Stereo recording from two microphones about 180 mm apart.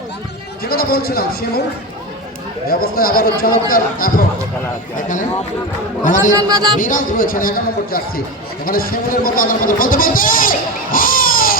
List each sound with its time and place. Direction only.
0.6 s a man's voice: 55° left (ahead or behind)
2.6 s speech: 55° left (ahead or behind)
6.3 s a man's voice: 20° right (ahead or behind)
6.7 s speech: 50° left (ahead or behind)
10.9 s a sound: 50° left (ahead or behind)